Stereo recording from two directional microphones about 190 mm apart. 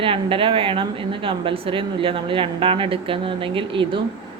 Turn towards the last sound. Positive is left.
turn(degrees=-25)  # may be behind; listen again after turning